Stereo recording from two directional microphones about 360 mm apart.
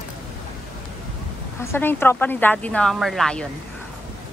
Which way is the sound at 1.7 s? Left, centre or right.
Centre.